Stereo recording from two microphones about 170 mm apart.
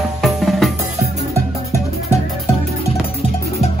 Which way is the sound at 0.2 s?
Centre (ahead or behind).